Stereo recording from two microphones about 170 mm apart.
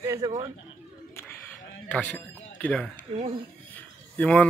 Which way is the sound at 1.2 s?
10° left (ahead or behind).